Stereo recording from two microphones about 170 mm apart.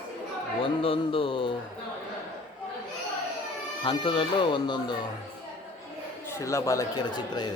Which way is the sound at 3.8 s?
30° left (ahead or behind).